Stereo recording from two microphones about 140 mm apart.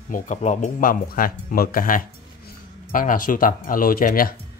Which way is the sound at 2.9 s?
75° left (ahead or behind).